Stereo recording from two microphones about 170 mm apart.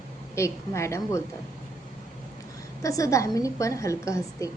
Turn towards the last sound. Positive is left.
turn(degrees=20)  # may be behind; listen again after turning